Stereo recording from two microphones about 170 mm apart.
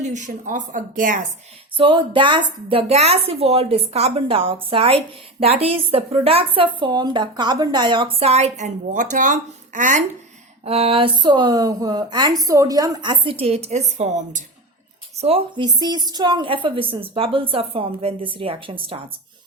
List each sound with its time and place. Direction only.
0.0 s speech: 45° right (ahead or behind)
1.7 s speech: 30° right (ahead or behind); by 10.0 s 50° right (ahead or behind)
10.6 s speech: 35° right (ahead or behind)
13.4 s speech: 35° right (ahead or behind)